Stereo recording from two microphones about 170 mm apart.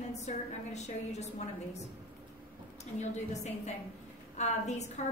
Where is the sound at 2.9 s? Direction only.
40° left (ahead or behind).